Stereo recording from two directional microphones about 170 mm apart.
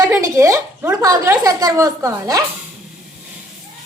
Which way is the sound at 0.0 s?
20° right (ahead or behind).